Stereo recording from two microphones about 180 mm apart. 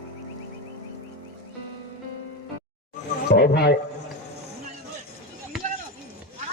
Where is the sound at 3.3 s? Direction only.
70° left (ahead or behind).